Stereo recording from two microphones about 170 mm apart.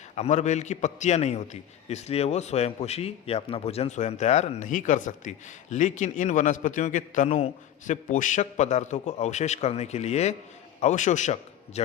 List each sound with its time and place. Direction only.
0.2 s a man's voice: 45° left (ahead or behind)